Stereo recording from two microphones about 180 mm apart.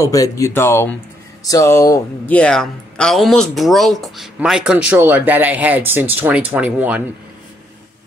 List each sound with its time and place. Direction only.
0.0 s speech: 20° left (ahead or behind); by 7.0 s 10° right (ahead or behind)